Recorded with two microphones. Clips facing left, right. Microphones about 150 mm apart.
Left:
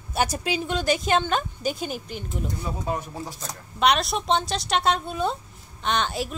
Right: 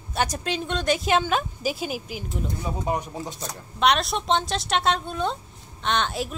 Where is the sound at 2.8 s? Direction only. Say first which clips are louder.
Right 3 dB; 15° right (ahead or behind).